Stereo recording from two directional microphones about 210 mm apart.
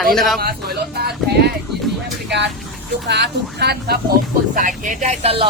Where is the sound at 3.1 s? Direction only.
50° right (ahead or behind).